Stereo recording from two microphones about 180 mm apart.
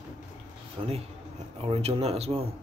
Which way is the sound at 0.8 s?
30° right (ahead or behind).